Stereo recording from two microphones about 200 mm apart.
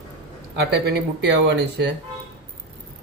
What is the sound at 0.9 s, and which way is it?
A man's voice, 60° right (ahead or behind).